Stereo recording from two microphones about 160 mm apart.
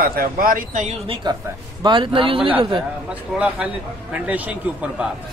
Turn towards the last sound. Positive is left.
turn(degrees=-10)  # may be behind; listen again after turning